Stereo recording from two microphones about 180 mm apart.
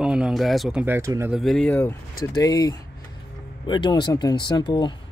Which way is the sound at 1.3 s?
Centre (ahead or behind).